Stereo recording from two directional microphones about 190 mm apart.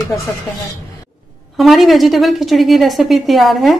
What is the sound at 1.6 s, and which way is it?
A woman's voice, centre (ahead or behind).